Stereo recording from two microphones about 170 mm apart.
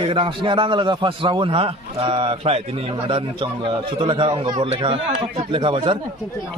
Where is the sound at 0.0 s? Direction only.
30° right (ahead or behind).